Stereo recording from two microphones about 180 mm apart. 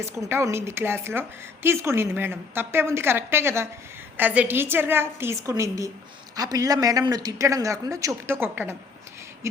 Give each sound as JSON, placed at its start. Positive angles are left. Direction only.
{"t": 0.0, "sound": "a woman's voice", "side_deg": -15}